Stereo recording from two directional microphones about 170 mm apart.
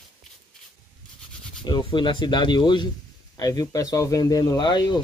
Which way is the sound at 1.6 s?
25° left (ahead or behind).